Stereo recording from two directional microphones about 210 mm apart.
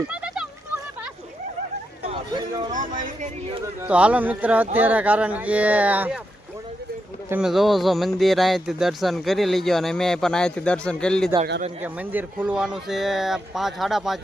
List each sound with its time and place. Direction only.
2.0 s a sound: 20° right (ahead or behind)
3.8 s speech: 5° right (ahead or behind)
7.3 s speech: 5° right (ahead or behind)
11.8 s speech: 10° right (ahead or behind)